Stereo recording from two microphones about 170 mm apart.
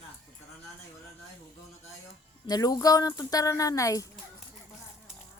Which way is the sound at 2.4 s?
25° left (ahead or behind).